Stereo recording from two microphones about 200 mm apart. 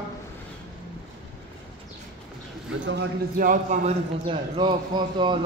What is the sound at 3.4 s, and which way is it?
A man's voice, 30° right (ahead or behind).